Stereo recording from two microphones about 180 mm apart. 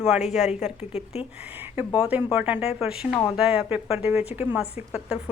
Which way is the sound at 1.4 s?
10° right (ahead or behind).